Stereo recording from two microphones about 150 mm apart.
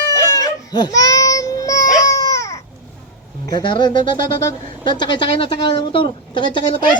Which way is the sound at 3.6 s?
30° left (ahead or behind).